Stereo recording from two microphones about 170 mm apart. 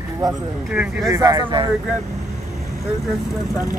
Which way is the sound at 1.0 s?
20° right (ahead or behind).